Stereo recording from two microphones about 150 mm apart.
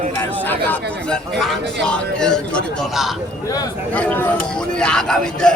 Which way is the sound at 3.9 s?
10° left (ahead or behind).